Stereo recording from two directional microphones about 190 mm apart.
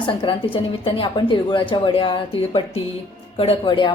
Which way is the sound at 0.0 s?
25° left (ahead or behind).